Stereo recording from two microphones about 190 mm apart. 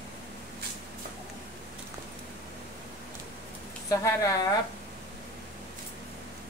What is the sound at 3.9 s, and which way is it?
Speech, 20° left (ahead or behind).